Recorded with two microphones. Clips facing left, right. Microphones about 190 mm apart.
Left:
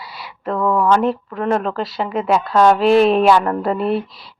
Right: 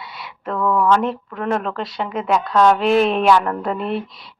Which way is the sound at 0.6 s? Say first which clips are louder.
Left 1 dB; 20° left (ahead or behind).